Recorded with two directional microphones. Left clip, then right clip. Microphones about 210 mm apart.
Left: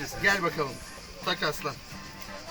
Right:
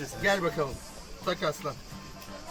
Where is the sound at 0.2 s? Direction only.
25° right (ahead or behind).